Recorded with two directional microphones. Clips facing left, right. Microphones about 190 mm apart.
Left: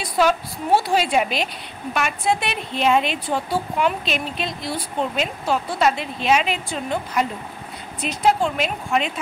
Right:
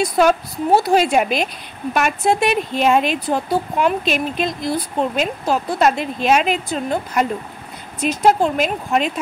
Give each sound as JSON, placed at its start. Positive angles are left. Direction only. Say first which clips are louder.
{"t": 0.0, "sound": "speech", "louder": "right 4 dB", "side_deg": -45}